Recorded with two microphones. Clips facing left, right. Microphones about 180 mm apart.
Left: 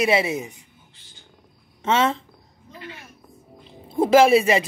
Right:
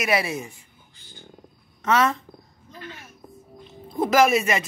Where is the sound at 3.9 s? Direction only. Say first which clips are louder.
Left 4 dB; 30° left (ahead or behind).